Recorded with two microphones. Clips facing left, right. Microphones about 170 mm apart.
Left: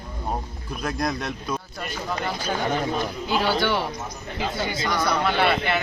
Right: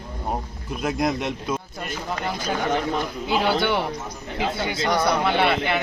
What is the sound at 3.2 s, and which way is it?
Speech, 20° right (ahead or behind).